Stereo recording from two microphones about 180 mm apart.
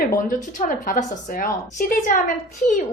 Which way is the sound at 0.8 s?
50° left (ahead or behind).